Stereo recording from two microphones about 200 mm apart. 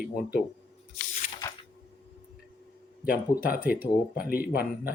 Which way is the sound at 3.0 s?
10° right (ahead or behind).